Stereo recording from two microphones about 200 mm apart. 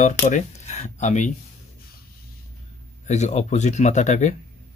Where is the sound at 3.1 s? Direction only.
35° left (ahead or behind).